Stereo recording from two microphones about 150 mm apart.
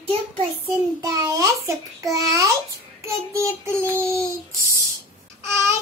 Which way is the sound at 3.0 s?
20° right (ahead or behind).